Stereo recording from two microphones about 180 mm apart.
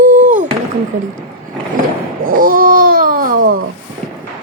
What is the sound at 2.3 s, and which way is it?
Babbling, 50° right (ahead or behind).